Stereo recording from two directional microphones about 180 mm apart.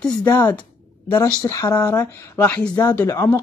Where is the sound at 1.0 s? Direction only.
25° left (ahead or behind).